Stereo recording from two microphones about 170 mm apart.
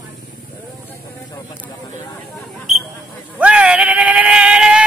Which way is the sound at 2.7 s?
Centre (ahead or behind).